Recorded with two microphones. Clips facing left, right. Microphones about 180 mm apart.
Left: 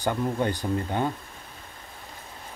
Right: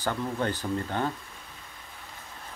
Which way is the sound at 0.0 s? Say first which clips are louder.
Left 3 dB; 15° left (ahead or behind).